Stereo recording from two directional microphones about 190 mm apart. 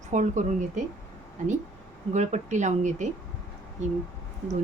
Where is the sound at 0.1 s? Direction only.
40° right (ahead or behind).